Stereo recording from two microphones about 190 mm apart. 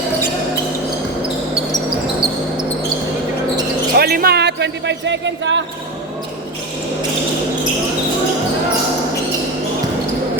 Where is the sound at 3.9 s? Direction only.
55° right (ahead or behind); by 5.7 s 70° right (ahead or behind).